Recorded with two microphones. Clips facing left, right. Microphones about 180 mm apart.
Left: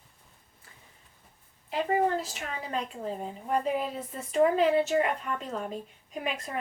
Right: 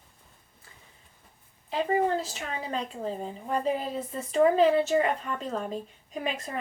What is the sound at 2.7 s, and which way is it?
A woman's voice, 30° right (ahead or behind).